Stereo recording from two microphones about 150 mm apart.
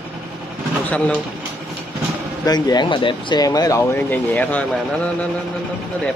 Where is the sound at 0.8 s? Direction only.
10° left (ahead or behind).